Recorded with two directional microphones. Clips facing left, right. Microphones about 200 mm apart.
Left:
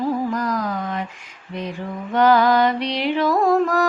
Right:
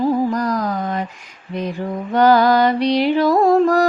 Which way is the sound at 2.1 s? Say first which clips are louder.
Right 2 dB; 35° right (ahead or behind).